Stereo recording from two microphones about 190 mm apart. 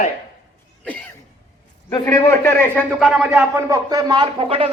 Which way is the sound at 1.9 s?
20° left (ahead or behind).